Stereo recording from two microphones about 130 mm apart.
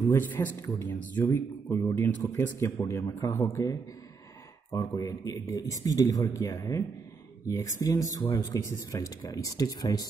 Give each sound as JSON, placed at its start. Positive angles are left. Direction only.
{"t": 0.1, "sound": "speech", "side_deg": 20}